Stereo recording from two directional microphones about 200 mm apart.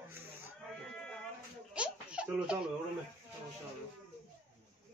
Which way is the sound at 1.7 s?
5° right (ahead or behind).